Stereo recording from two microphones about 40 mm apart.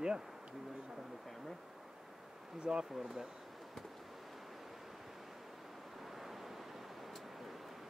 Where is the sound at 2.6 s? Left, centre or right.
Centre.